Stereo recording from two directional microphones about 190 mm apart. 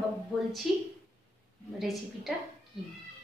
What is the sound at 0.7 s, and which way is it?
Speech, centre (ahead or behind).